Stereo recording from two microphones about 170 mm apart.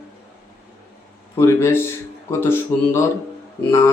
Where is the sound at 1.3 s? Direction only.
15° left (ahead or behind).